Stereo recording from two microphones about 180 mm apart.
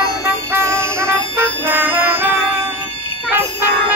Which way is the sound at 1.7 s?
10° right (ahead or behind).